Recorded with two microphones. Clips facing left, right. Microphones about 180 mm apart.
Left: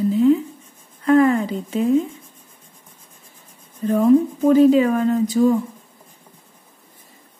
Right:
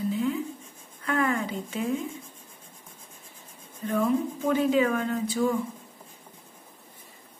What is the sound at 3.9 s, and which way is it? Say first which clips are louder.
A woman's voice: left 10 dB; 35° left (ahead or behind).